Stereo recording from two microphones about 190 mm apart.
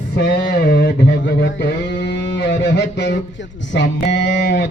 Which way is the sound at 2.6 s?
65° left (ahead or behind).